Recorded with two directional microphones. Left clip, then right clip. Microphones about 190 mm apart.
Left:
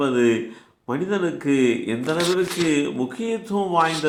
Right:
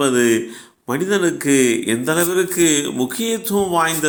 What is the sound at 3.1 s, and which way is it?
A man's voice, 30° right (ahead or behind).